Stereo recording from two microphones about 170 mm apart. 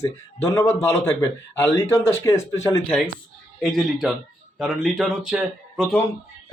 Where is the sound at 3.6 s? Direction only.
Centre (ahead or behind).